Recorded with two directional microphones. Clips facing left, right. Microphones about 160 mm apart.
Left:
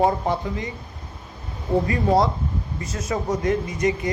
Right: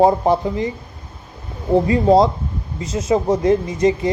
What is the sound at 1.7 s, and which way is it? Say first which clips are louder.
Speech: right 6 dB; 25° right (ahead or behind).